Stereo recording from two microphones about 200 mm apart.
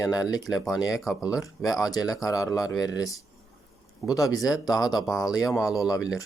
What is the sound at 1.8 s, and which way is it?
Speech, 20° left (ahead or behind).